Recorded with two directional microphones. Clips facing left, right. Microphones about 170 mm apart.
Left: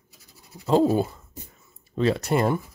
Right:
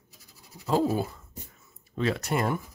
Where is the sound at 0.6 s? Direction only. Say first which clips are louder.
Left 5 dB; 25° left (ahead or behind).